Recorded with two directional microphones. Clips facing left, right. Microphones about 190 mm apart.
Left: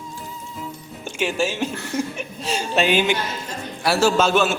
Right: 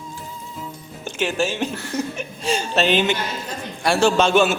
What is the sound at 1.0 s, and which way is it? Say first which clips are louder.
A man's voice: even; 10° left (ahead or behind).